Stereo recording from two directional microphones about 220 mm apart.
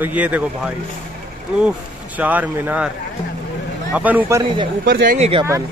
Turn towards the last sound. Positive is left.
turn(degrees=-25)  # may be behind; listen again after turning